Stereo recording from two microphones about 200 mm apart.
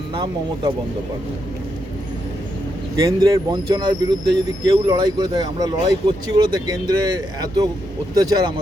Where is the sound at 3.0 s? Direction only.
15° right (ahead or behind).